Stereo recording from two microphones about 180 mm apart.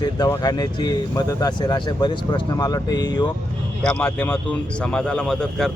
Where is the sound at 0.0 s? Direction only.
20° left (ahead or behind).